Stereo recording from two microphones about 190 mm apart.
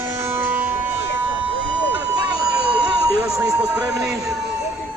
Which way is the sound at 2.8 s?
20° right (ahead or behind).